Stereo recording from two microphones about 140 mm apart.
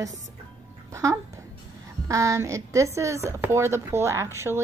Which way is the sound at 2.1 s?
25° right (ahead or behind).